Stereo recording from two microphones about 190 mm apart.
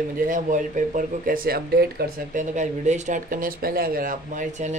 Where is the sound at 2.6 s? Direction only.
40° right (ahead or behind).